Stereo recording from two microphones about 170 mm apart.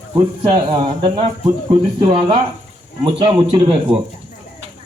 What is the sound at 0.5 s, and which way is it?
Speech, 30° right (ahead or behind).